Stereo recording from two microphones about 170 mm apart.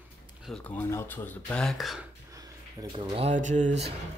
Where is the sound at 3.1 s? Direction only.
40° right (ahead or behind).